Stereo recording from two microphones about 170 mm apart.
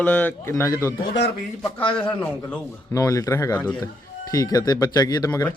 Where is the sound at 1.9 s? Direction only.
10° left (ahead or behind).